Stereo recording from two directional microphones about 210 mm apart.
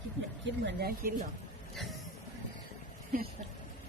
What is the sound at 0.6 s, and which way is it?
Speech, 45° right (ahead or behind).